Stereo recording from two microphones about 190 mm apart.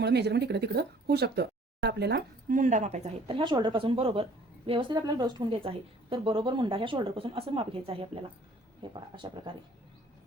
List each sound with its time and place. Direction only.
0.0 s speech: 60° right (ahead or behind)
2.5 s speech: 40° right (ahead or behind); by 9.4 s 25° right (ahead or behind)